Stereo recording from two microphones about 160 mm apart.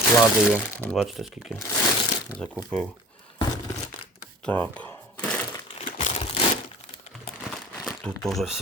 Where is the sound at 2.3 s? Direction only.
5° left (ahead or behind).